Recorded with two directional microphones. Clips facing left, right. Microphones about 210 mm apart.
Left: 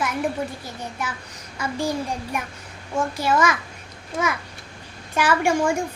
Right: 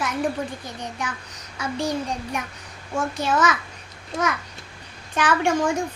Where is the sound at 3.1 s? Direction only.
10° left (ahead or behind).